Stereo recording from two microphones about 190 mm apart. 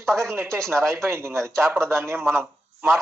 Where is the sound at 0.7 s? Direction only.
15° right (ahead or behind).